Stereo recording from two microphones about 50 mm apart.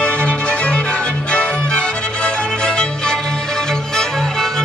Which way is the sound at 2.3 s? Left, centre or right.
Centre.